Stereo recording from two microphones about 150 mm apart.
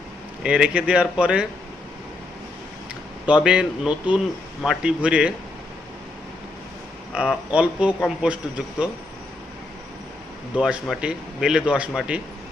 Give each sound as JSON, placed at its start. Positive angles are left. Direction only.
{"t": 0.4, "sound": "a man's voice", "side_deg": -5}
{"t": 3.2, "sound": "a man's voice", "side_deg": -5}
{"t": 7.1, "sound": "a man's voice", "side_deg": -5}
{"t": 10.6, "sound": "speech", "side_deg": 0}